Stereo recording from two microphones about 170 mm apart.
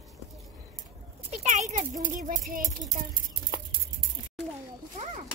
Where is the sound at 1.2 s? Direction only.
40° right (ahead or behind).